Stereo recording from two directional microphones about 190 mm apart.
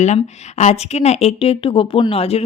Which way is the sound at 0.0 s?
35° left (ahead or behind).